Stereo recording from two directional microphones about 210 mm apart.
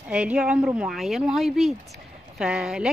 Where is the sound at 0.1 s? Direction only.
5° right (ahead or behind).